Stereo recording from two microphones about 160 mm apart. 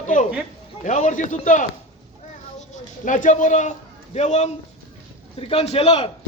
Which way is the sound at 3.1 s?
50° left (ahead or behind).